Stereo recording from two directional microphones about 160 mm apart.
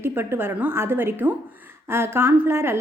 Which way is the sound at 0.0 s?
15° right (ahead or behind).